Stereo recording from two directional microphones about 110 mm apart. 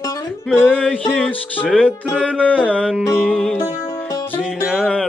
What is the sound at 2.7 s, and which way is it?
Music, 10° left (ahead or behind).